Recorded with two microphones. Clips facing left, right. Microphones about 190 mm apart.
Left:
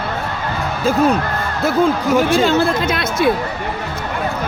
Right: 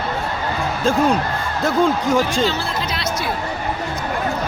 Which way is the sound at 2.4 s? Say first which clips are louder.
Left 6 dB; 50° left (ahead or behind).